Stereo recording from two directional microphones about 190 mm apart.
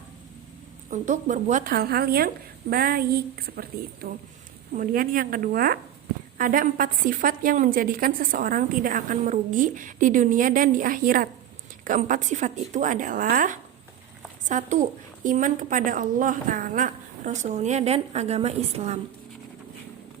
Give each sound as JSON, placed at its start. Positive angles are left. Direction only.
{"t": 0.9, "sound": "a woman's voice", "side_deg": -40}